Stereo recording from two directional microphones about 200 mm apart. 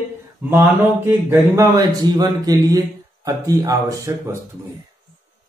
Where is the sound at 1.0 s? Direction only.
10° right (ahead or behind).